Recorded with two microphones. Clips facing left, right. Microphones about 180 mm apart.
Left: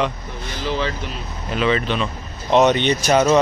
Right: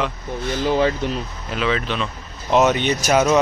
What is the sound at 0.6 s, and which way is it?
Speech, 50° right (ahead or behind).